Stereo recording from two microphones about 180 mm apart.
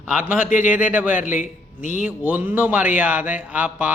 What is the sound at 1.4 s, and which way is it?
Speech, 45° left (ahead or behind).